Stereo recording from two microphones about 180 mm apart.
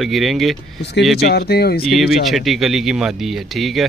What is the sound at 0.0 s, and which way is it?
Speech, centre (ahead or behind).